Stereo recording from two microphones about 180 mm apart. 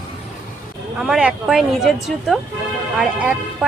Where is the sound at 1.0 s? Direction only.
5° right (ahead or behind).